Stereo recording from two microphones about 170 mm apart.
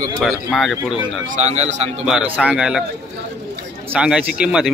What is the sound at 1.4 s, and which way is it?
Speech, 40° right (ahead or behind).